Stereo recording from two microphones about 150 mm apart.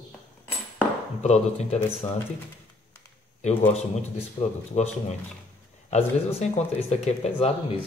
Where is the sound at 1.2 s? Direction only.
45° left (ahead or behind).